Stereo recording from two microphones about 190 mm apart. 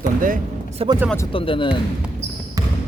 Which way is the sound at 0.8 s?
30° right (ahead or behind).